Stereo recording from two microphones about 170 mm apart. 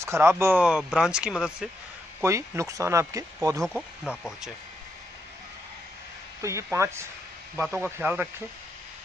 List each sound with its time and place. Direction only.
0.0 s speech: 15° right (ahead or behind)
2.2 s speech: 15° right (ahead or behind)
3.6 s speech: centre (ahead or behind)
6.4 s speech: 15° right (ahead or behind)
7.5 s speech: 5° left (ahead or behind)
8.0 s speech: 10° right (ahead or behind)